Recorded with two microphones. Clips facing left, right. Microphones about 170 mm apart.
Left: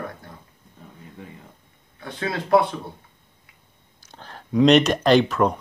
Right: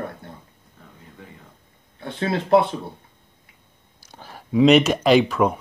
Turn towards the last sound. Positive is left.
turn(degrees=-5)  # may be behind; listen again after turning